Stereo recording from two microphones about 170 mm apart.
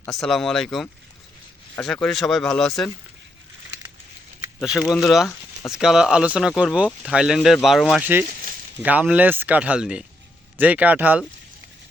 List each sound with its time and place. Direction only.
0.0 s speech: centre (ahead or behind)
4.6 s speech: 5° right (ahead or behind)
8.3 s sizzle: 55° right (ahead or behind)
8.8 s speech: 10° right (ahead or behind)